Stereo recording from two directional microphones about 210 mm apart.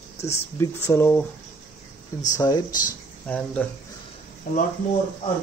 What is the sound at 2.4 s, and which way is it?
Speech, 15° left (ahead or behind).